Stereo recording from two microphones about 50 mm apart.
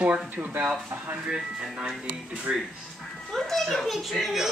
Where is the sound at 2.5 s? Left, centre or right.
Right.